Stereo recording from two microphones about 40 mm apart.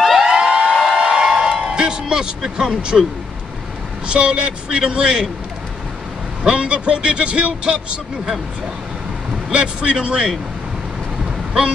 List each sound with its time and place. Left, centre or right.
0.3 s a sound: centre
4.1 s a man's voice: right
6.4 s a man's voice: right
9.5 s a man's voice: right
11.2 s vehicle: right